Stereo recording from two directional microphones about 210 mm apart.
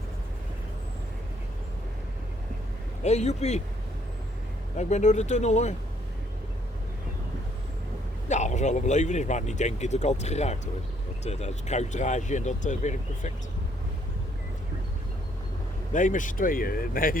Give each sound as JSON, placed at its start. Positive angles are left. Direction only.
{"t": 3.0, "sound": "speech", "side_deg": 30}
{"t": 4.8, "sound": "speech", "side_deg": 35}
{"t": 8.3, "sound": "speech", "side_deg": 35}
{"t": 15.9, "sound": "speech", "side_deg": 35}